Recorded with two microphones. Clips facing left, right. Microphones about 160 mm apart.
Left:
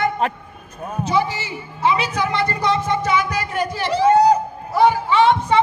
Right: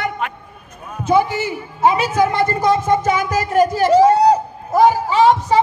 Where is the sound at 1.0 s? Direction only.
55° right (ahead or behind).